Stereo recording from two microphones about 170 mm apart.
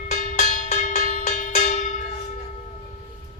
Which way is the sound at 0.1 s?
45° left (ahead or behind).